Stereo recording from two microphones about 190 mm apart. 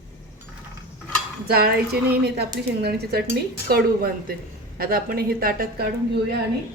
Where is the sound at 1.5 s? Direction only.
55° right (ahead or behind).